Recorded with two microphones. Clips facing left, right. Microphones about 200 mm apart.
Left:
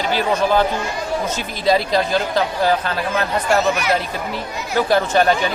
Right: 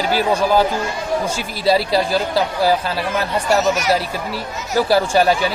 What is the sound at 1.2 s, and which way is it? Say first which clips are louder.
Speech: right 1 dB; 10° right (ahead or behind).